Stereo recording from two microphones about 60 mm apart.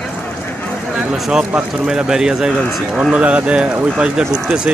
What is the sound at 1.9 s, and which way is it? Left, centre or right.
Speech, centre.